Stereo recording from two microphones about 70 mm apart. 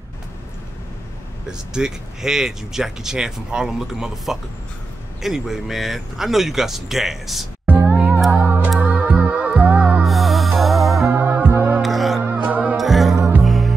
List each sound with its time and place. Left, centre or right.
1.7 s speech: centre
7.6 s music: right
10.0 s music: centre
11.2 s music: right
11.8 s music: centre
12.2 s music: right
12.7 s music: centre